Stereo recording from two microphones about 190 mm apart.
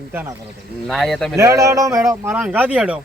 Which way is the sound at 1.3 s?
15° right (ahead or behind).